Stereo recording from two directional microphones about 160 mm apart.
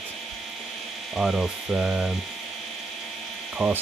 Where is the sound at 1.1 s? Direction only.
5° right (ahead or behind).